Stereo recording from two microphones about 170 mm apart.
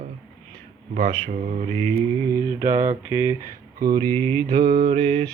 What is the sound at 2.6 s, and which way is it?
Mantra, 15° right (ahead or behind).